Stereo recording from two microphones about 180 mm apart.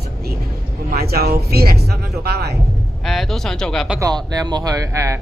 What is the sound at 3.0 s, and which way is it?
Speech, centre (ahead or behind).